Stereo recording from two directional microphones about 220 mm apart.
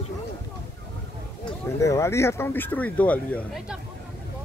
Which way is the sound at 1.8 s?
15° left (ahead or behind).